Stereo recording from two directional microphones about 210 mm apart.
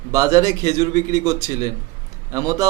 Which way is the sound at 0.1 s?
15° right (ahead or behind).